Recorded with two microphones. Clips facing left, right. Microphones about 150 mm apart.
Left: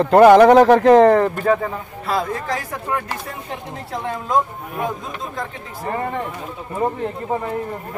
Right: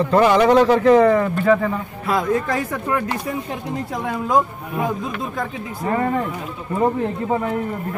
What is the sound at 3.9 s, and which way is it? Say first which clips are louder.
Speech: right 1 dB; 5° right (ahead or behind).